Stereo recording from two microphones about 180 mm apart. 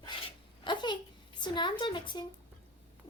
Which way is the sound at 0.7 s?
25° left (ahead or behind).